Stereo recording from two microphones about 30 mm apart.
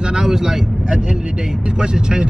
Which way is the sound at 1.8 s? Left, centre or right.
Right.